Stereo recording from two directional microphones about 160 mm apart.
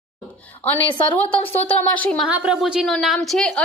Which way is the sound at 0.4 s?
10° left (ahead or behind).